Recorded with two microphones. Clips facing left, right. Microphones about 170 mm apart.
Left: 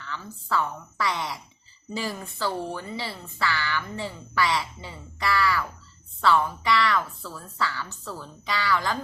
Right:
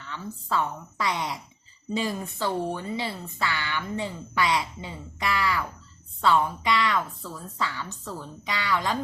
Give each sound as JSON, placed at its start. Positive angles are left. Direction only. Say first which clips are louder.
{"t": 0.1, "sound": "speech", "louder": "even", "side_deg": -20}